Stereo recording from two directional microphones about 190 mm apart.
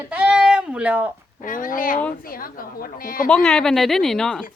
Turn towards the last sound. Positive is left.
turn(degrees=5)  # may be behind; listen again after turning